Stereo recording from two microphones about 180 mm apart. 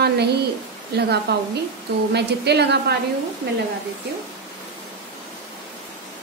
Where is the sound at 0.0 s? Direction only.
65° right (ahead or behind).